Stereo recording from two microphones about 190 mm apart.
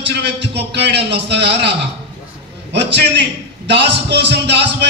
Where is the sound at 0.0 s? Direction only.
65° right (ahead or behind).